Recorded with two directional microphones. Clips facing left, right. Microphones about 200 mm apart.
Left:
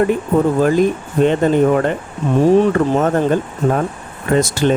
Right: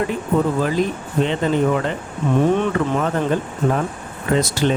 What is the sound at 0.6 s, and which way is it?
Speech, 50° left (ahead or behind).